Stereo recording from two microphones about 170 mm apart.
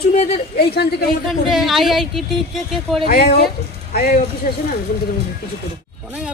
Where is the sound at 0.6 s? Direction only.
70° left (ahead or behind).